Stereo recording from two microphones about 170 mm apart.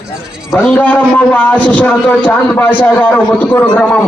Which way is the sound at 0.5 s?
10° left (ahead or behind).